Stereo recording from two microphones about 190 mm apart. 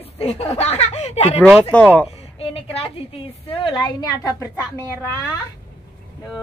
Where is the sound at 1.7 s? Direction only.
5° left (ahead or behind).